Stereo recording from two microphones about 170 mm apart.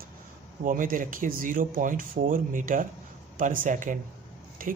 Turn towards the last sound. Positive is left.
turn(degrees=-55)  # may be behind; listen again after turning